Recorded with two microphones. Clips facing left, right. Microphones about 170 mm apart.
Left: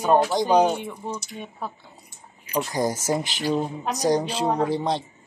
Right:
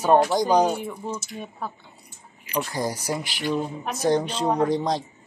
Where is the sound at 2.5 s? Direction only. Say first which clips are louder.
Left 2 dB; 20° left (ahead or behind).